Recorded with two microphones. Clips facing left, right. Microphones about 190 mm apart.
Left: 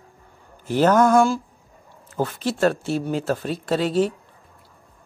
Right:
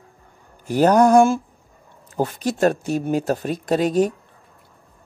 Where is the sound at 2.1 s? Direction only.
15° right (ahead or behind).